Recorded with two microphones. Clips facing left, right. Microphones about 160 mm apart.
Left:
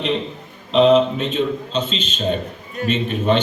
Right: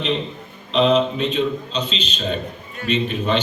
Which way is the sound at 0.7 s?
45° left (ahead or behind).